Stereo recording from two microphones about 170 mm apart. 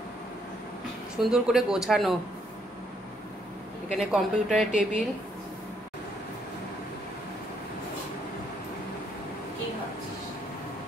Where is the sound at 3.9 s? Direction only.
Centre (ahead or behind).